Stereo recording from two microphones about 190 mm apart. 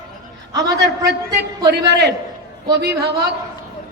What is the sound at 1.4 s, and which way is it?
A man's voice, 60° right (ahead or behind).